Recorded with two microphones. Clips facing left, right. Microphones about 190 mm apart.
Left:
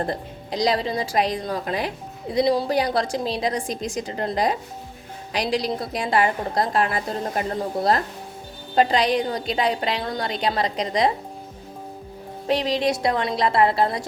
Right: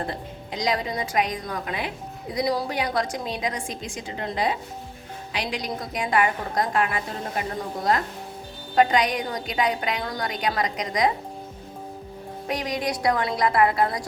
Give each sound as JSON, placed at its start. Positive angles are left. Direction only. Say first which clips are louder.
{"t": 0.1, "sound": "a woman's voice", "louder": "left 4 dB", "side_deg": 35}
{"t": 8.7, "sound": "a woman's voice", "louder": "left 1 dB", "side_deg": 30}
{"t": 12.5, "sound": "a woman's voice", "louder": "left 6 dB", "side_deg": 30}